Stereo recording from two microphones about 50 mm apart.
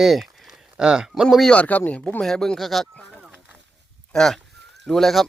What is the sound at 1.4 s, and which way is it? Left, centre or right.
Speech, left.